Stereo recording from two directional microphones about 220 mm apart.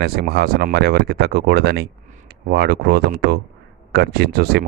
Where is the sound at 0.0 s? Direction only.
45° right (ahead or behind).